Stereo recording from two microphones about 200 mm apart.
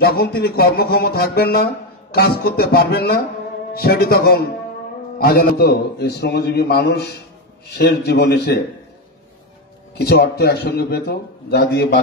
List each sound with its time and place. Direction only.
0.0 s a man's voice: 50° left (ahead or behind)
9.9 s a man's voice: 55° left (ahead or behind)